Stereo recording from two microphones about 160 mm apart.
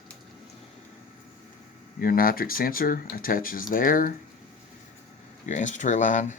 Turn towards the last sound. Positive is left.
turn(degrees=50)  # may be behind; listen again after turning